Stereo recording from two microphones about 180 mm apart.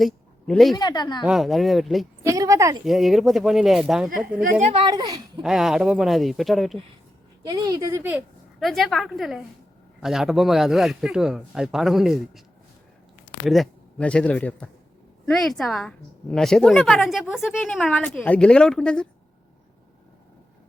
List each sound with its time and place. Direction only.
0.0 s a sound: centre (ahead or behind)
0.8 s speech: 25° left (ahead or behind)
1.2 s a woman's voice: centre (ahead or behind)
2.2 s speech: 20° right (ahead or behind)
2.8 s a woman's voice: centre (ahead or behind)
4.6 s speech: 30° right (ahead or behind)
5.4 s a woman's voice: 5° right (ahead or behind)
7.4 s a woman's voice: 20° right (ahead or behind); by 12.4 s centre (ahead or behind)
13.5 s a woman's voice: 5° left (ahead or behind)